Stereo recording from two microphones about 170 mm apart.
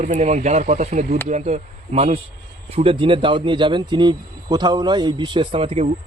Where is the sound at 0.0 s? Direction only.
40° right (ahead or behind).